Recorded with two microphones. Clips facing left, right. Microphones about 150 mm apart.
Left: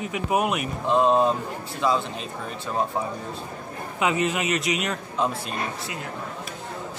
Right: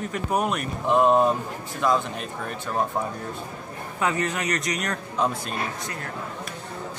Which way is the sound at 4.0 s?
20° left (ahead or behind).